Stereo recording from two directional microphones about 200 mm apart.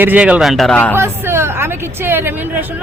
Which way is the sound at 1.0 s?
10° right (ahead or behind).